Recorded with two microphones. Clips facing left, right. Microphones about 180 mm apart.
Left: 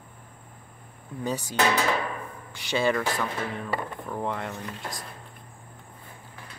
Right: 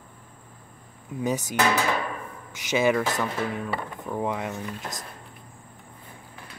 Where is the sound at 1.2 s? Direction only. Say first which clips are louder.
Right 3 dB; 15° right (ahead or behind).